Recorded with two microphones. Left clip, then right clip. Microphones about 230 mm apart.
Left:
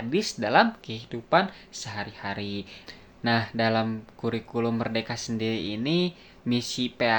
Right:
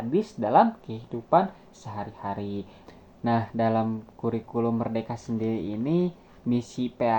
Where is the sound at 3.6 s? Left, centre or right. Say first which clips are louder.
Even; left.